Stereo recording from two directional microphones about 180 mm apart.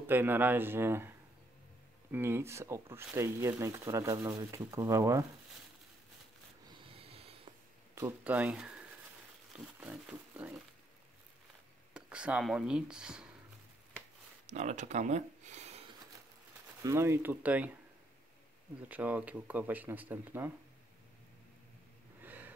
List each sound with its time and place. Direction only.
0.0 s speech: 10° right (ahead or behind)
2.1 s speech: 15° right (ahead or behind)
6.7 s snort: 35° right (ahead or behind)
8.2 s speech: 10° right (ahead or behind)
11.9 s speech: 5° right (ahead or behind)
14.5 s speech: 40° right (ahead or behind)
16.8 s speech: 15° right (ahead or behind)
18.8 s speech: 10° right (ahead or behind)
22.2 s a sound: 10° right (ahead or behind)